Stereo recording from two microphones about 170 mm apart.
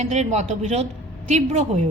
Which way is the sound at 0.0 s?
40° right (ahead or behind).